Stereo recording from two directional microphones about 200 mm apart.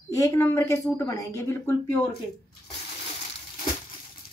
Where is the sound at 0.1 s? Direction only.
15° left (ahead or behind).